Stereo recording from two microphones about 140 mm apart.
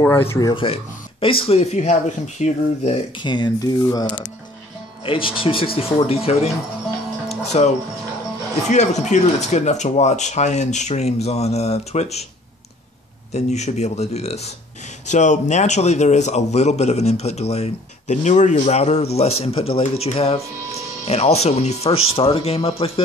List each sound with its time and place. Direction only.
0.0 s speech: 20° left (ahead or behind)
0.5 s a man's voice: 40° left (ahead or behind)
3.2 s a man's voice: 35° left (ahead or behind)
7.5 s a man's voice: 50° left (ahead or behind)
13.3 s a man's voice: 55° left (ahead or behind)